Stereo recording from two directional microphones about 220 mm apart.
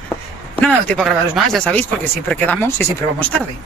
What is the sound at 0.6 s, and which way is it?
Speech, 5° left (ahead or behind).